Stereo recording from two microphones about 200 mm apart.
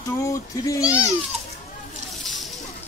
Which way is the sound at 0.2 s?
15° left (ahead or behind).